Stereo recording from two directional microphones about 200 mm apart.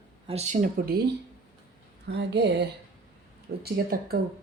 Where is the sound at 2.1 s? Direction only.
60° right (ahead or behind).